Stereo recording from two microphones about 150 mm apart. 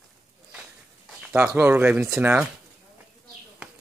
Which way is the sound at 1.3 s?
15° right (ahead or behind).